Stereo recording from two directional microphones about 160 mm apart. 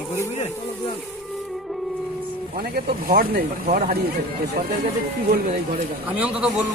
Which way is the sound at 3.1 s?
65° right (ahead or behind).